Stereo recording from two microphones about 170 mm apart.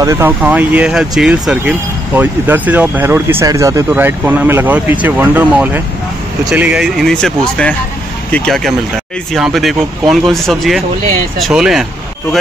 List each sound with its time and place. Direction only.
0.0 s speech: 20° right (ahead or behind)
0.4 s speech: 10° right (ahead or behind)